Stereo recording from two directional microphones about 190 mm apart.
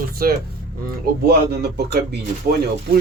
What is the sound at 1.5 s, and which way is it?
Speech, 60° right (ahead or behind).